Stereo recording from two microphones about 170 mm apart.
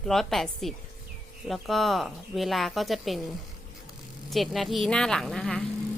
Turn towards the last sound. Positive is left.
turn(degrees=5)  # may be behind; listen again after turning